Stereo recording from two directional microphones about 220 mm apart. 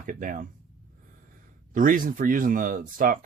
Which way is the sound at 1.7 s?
40° right (ahead or behind).